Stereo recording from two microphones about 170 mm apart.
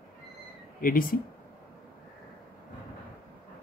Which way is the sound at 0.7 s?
55° left (ahead or behind).